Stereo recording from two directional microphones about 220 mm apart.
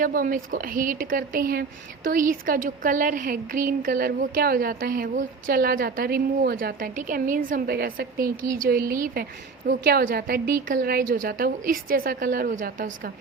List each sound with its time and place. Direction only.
0.0 s a woman's voice: 40° right (ahead or behind)